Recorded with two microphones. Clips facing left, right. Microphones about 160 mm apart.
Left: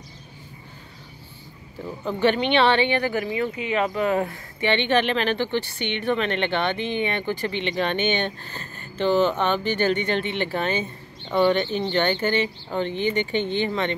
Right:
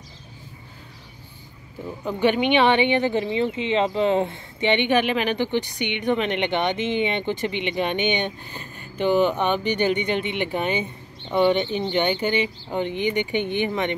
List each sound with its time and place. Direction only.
2.0 s speech: 15° right (ahead or behind)